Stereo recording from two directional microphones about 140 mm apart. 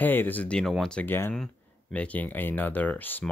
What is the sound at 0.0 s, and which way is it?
Speech, 15° left (ahead or behind).